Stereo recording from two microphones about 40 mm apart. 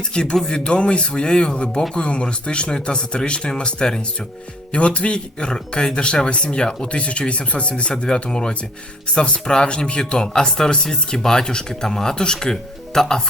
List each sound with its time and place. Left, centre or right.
0.1 s speech: left